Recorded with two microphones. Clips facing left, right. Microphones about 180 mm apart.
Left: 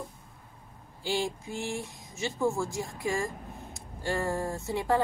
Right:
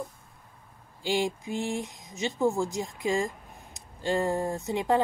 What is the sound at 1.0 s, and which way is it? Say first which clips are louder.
A woman's voice: right 3 dB; 15° right (ahead or behind).